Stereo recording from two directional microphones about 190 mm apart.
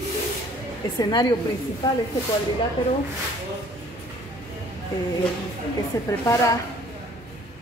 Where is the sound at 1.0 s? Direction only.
20° left (ahead or behind).